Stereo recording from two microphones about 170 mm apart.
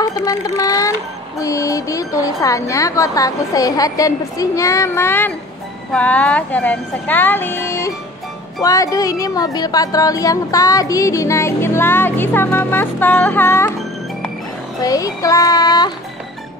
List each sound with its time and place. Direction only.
0.0 s a woman's voice: 20° left (ahead or behind)
14.8 s a woman's voice: 20° left (ahead or behind)